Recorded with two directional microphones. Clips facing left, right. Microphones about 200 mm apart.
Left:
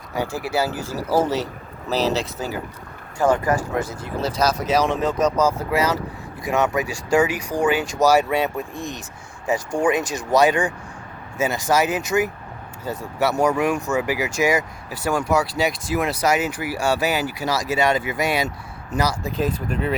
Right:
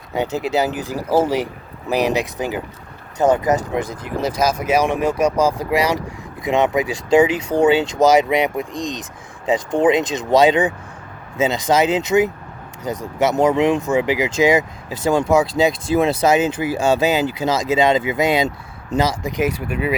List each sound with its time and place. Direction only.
0.1 s speech: 20° right (ahead or behind)
19.3 s speech: 85° right
19.5 s speech: 10° right (ahead or behind)